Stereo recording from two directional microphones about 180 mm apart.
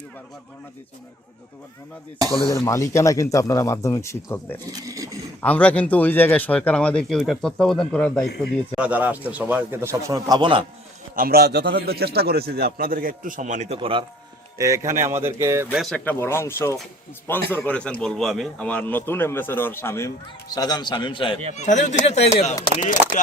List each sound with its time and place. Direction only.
2.5 s speech: 15° left (ahead or behind)
4.7 s speech: 20° right (ahead or behind)
5.4 s speech: 10° left (ahead or behind)
8.7 s a man's voice: 10° right (ahead or behind); by 10.7 s 25° right (ahead or behind)
11.1 s a man's voice: 55° right (ahead or behind)
13.7 s a man's voice: 30° right (ahead or behind)
14.6 s a man's voice: 15° right (ahead or behind)
15.7 s speech: centre (ahead or behind)
16.1 s a man's voice: 15° left (ahead or behind)
21.5 s speech: 40° left (ahead or behind)